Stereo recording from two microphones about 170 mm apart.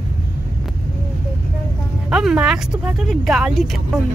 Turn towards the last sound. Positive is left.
turn(degrees=0)  # may be behind; listen again after turning